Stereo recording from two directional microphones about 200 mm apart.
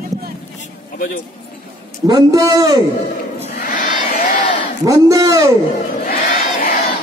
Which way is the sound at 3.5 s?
45° left (ahead or behind).